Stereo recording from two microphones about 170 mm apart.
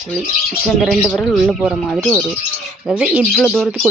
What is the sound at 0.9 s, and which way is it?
Speech, 5° left (ahead or behind).